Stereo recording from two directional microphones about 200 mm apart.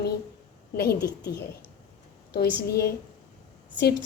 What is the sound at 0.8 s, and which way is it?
A woman's voice, 55° left (ahead or behind).